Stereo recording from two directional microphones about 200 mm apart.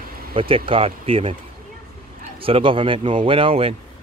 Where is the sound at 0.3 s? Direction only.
25° right (ahead or behind).